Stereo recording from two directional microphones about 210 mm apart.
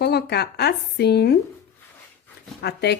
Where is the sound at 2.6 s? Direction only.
50° left (ahead or behind).